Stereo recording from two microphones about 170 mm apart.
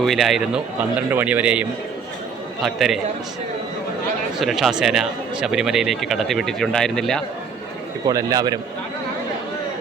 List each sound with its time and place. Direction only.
0.0 s speech: centre (ahead or behind)
2.6 s speech: centre (ahead or behind)
4.4 s speech: centre (ahead or behind)
8.0 s a man's voice: 20° right (ahead or behind)